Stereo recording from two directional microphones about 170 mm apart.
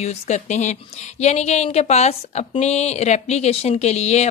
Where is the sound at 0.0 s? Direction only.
40° left (ahead or behind).